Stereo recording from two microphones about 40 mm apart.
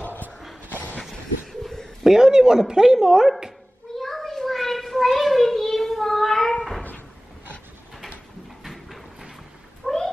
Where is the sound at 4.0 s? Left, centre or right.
Centre.